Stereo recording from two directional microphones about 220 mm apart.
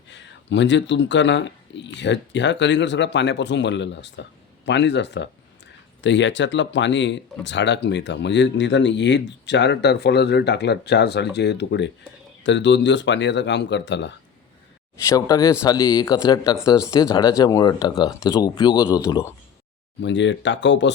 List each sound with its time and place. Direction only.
0.1 s speech: 55° left (ahead or behind)
15.0 s speech: 15° left (ahead or behind)
20.0 s speech: 55° left (ahead or behind)